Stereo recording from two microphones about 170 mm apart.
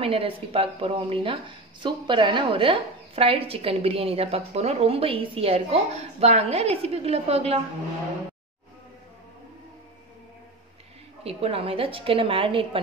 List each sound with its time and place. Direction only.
0.0 s a woman's voice: 35° right (ahead or behind)
11.2 s a woman's voice: 35° right (ahead or behind)